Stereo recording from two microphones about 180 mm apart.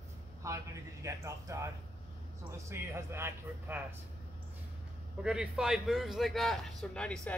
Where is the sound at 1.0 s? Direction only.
15° right (ahead or behind).